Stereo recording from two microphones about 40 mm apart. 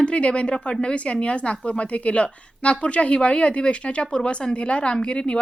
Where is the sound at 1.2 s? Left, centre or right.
Left.